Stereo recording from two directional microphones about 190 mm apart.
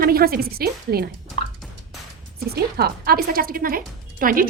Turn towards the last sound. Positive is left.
turn(degrees=-45)  # may be behind; listen again after turning